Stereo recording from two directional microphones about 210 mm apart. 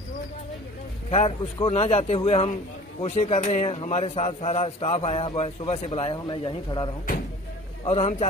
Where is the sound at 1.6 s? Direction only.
30° left (ahead or behind).